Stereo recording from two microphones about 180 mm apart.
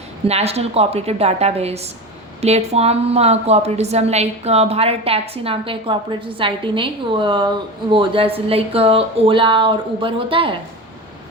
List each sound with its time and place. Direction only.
0.3 s a woman's voice: 35° right (ahead or behind)